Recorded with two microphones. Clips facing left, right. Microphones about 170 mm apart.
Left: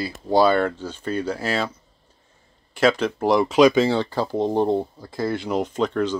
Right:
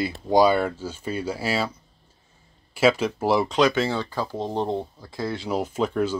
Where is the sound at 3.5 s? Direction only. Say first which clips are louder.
Left 6 dB; 15° left (ahead or behind).